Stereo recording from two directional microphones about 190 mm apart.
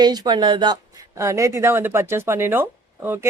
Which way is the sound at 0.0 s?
20° right (ahead or behind).